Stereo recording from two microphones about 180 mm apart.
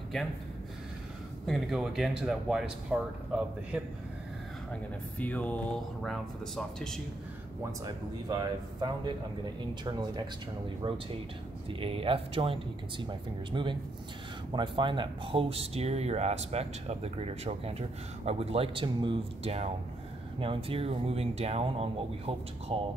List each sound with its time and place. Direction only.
1.4 s speech: centre (ahead or behind)
5.2 s a sound: 10° left (ahead or behind)
6.0 s speech: centre (ahead or behind)
7.8 s speech: 20° right (ahead or behind)
11.8 s speech: 30° right (ahead or behind)